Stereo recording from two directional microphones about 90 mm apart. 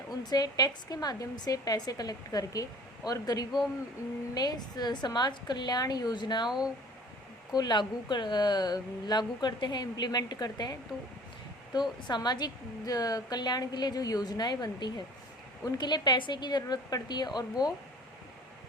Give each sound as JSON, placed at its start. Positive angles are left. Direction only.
{"t": 0.1, "sound": "a woman's voice", "side_deg": 50}
{"t": 7.5, "sound": "a woman's voice", "side_deg": 55}